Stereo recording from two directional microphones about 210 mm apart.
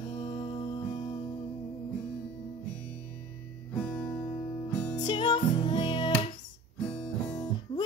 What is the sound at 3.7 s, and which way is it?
Music, 5° left (ahead or behind).